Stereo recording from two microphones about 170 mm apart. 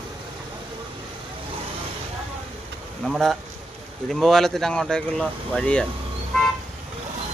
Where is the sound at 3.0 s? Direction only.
Centre (ahead or behind).